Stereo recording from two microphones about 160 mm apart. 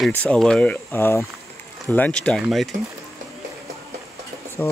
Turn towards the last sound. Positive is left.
turn(degrees=10)  # may be behind; listen again after turning